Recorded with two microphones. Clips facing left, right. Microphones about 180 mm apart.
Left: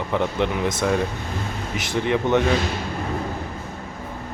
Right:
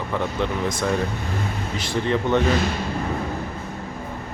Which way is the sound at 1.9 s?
15° left (ahead or behind).